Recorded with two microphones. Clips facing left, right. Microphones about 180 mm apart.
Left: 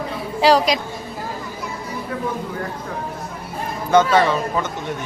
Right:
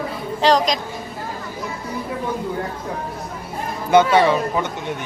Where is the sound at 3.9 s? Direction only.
15° right (ahead or behind).